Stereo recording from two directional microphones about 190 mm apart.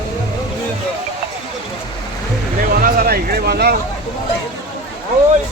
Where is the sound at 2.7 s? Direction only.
50° right (ahead or behind).